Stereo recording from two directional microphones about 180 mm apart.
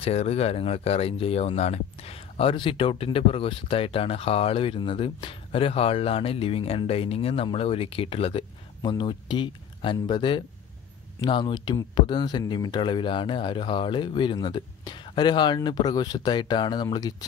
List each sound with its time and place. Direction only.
0.0 s speech: 35° left (ahead or behind)